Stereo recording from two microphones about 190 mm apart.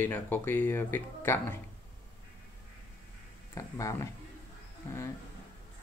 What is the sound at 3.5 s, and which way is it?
Speech, 15° left (ahead or behind).